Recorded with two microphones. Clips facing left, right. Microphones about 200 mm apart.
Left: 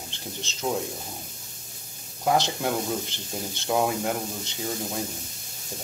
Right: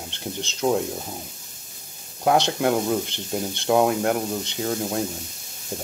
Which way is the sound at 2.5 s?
65° right (ahead or behind).